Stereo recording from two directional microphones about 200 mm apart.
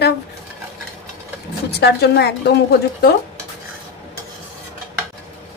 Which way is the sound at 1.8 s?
55° left (ahead or behind).